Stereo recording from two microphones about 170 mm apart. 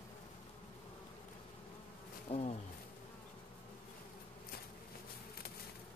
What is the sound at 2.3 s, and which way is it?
Insect, 35° left (ahead or behind).